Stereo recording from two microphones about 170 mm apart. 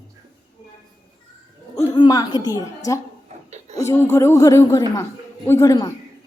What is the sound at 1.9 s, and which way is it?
A woman's voice, 25° left (ahead or behind).